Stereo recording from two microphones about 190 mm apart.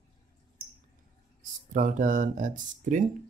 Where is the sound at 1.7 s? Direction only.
40° right (ahead or behind).